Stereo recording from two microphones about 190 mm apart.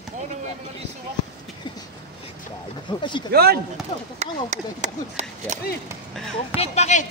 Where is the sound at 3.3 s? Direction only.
55° right (ahead or behind).